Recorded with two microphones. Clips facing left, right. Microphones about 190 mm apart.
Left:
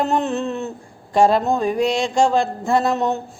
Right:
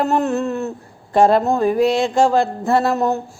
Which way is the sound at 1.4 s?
15° left (ahead or behind).